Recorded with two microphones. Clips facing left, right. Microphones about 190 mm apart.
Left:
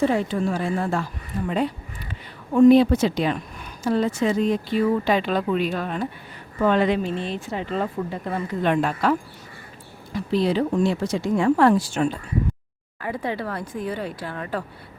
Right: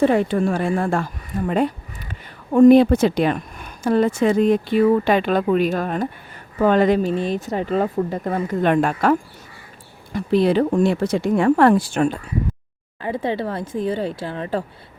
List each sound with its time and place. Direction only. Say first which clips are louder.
0.0 s speech: right 4 dB; 60° right (ahead or behind)
10.2 s speech: right 5 dB; 55° right (ahead or behind)
13.0 s speech: right 4 dB; 25° right (ahead or behind)